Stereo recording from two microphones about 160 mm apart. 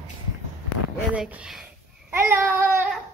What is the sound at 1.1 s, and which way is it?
Speech, 5° right (ahead or behind).